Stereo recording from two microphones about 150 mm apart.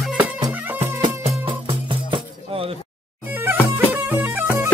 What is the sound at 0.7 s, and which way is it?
Music, 45° right (ahead or behind).